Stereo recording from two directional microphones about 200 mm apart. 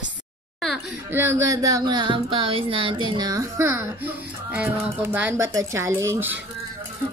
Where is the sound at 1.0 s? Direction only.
10° right (ahead or behind).